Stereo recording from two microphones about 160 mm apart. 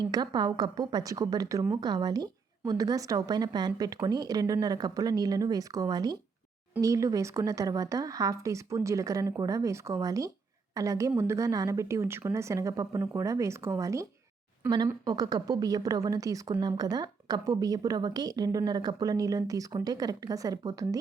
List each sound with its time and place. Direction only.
0.0 s a woman's voice: 25° right (ahead or behind)